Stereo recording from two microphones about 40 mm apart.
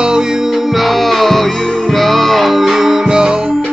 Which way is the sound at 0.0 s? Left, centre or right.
Centre.